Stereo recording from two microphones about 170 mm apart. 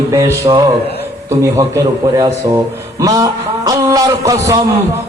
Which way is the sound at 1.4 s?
20° right (ahead or behind).